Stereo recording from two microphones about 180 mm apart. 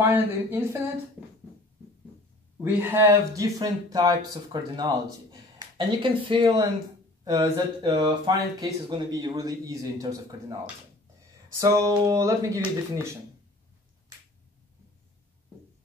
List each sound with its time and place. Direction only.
0.0 s speech: 10° right (ahead or behind)
2.6 s speech: 10° right (ahead or behind)